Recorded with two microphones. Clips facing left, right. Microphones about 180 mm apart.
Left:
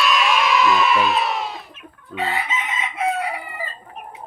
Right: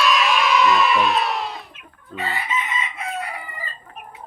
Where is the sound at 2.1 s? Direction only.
80° left.